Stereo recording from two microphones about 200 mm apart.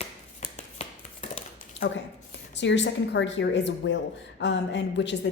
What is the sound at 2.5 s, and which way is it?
A woman's voice, 65° left (ahead or behind).